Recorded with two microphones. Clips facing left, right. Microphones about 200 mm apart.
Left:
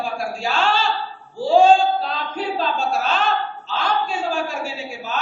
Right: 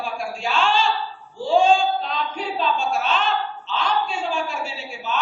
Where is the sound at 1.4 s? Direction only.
35° left (ahead or behind).